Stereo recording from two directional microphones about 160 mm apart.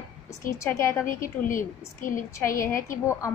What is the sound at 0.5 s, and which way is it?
Speech, 20° left (ahead or behind).